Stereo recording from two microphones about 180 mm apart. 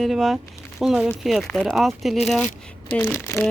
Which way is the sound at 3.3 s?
15° left (ahead or behind).